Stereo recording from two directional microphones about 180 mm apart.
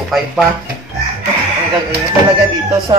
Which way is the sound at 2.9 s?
25° right (ahead or behind).